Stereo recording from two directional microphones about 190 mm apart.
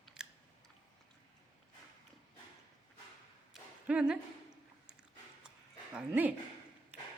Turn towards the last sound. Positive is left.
turn(degrees=-10)  # may be behind; listen again after turning